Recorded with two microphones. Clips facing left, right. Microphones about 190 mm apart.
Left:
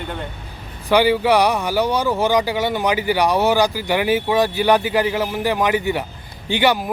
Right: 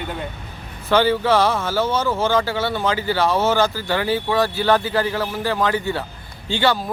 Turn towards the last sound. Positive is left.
turn(degrees=15)  # may be behind; listen again after turning